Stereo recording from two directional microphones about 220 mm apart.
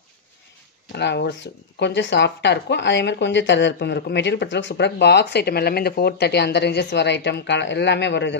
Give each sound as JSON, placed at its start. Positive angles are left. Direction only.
{"t": 0.9, "sound": "speech", "side_deg": 50}